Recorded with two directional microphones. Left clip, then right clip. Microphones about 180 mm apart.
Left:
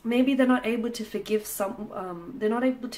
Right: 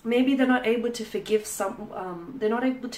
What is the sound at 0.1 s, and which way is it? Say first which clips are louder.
Speech: right 1 dB; 35° left (ahead or behind).